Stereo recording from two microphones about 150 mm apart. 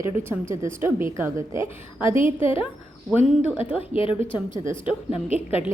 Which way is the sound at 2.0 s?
35° left (ahead or behind).